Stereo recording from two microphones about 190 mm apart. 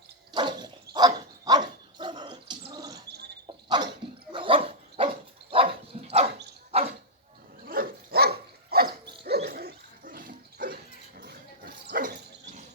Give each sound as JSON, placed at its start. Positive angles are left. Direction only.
{"t": 0.3, "sound": "dog", "side_deg": -25}
{"t": 7.6, "sound": "dog", "side_deg": -50}